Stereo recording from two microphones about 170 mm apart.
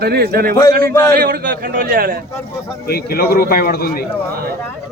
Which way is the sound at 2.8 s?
65° left (ahead or behind).